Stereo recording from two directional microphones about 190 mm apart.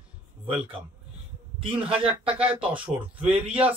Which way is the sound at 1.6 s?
30° right (ahead or behind).